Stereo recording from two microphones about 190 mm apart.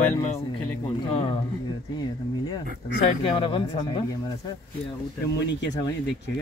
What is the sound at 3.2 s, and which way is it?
Speech, 25° left (ahead or behind).